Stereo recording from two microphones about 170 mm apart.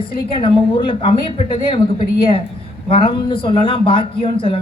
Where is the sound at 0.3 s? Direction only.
30° left (ahead or behind).